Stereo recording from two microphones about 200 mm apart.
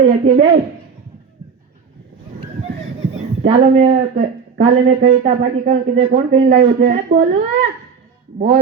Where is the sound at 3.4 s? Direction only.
35° right (ahead or behind).